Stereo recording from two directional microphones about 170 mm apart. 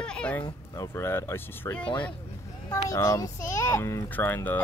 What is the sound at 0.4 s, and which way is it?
Speech, 20° left (ahead or behind).